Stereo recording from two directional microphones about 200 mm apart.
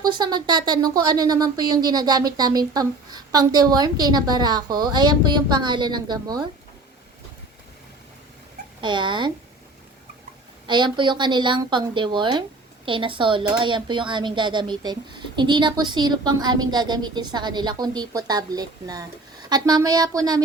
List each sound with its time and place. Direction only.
0.0 s speech: 20° right (ahead or behind)
8.8 s speech: 25° right (ahead or behind)
10.7 s speech: 25° right (ahead or behind)